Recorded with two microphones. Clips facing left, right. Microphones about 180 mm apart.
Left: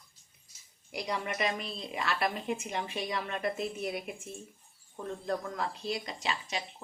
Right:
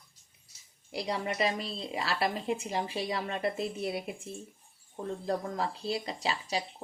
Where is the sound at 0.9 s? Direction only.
30° right (ahead or behind).